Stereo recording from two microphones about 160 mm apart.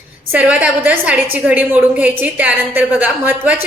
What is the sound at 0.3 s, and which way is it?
A woman's voice, 10° right (ahead or behind).